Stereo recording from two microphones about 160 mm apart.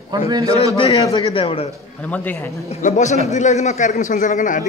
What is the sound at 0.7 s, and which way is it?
Speech, 35° left (ahead or behind).